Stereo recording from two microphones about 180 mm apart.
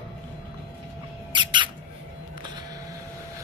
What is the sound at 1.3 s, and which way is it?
Music, 25° right (ahead or behind).